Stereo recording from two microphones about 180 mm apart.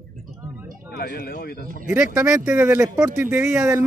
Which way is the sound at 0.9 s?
55° left (ahead or behind).